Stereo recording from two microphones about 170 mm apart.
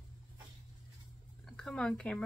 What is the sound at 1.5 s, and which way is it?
Speech, 5° left (ahead or behind).